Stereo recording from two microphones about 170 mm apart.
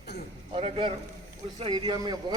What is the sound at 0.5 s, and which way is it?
A man's voice, 35° right (ahead or behind).